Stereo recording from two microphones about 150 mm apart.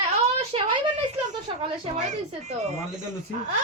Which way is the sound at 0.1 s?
50° right (ahead or behind).